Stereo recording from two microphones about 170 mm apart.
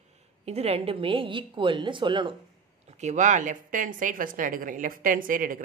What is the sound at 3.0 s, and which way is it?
A man's voice, 45° right (ahead or behind).